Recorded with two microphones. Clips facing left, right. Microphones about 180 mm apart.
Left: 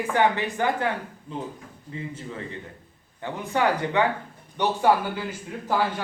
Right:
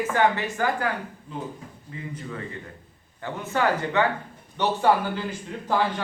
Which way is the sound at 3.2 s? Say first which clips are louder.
Left 1 dB; 15° left (ahead or behind).